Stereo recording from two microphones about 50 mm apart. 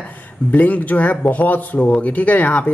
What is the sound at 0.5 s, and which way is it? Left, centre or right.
Speech, left.